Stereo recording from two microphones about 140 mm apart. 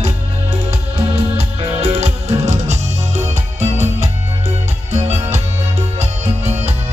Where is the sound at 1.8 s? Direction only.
50° right (ahead or behind).